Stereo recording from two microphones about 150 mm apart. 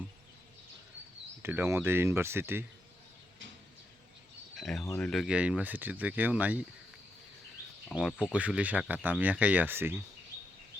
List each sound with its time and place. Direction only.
1.4 s speech: 15° right (ahead or behind)
4.5 s speech: centre (ahead or behind)
7.9 s speech: centre (ahead or behind)